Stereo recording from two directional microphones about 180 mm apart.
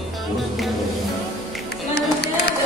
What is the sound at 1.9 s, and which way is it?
Run, 65° left (ahead or behind).